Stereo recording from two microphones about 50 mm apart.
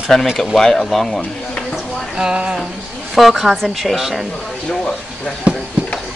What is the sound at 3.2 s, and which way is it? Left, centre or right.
Speech, centre.